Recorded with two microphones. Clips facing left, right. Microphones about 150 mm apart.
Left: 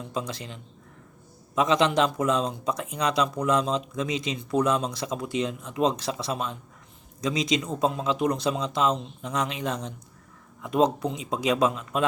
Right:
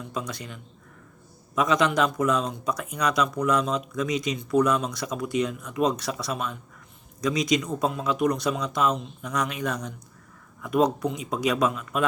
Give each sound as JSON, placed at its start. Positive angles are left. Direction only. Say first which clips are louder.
{"t": 0.0, "sound": "speech", "louder": "left 1 dB", "side_deg": 30}